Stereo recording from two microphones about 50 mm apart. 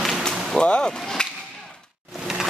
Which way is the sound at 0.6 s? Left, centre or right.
Centre.